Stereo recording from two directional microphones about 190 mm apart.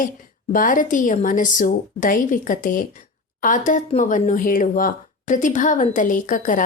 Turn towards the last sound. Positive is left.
turn(degrees=45)  # may be behind; listen again after turning